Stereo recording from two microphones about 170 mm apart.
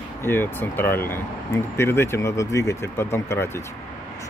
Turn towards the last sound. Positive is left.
turn(degrees=15)  # may be behind; listen again after turning